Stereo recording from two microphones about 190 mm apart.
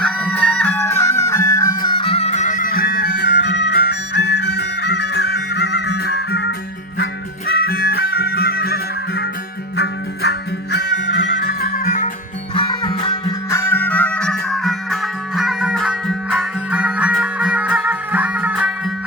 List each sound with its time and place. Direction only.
0.0 s music: 5° left (ahead or behind); by 10.8 s 60° left (ahead or behind)
11.4 s music: 50° left (ahead or behind)
12.5 s music: 25° left (ahead or behind); by 18.7 s 5° right (ahead or behind)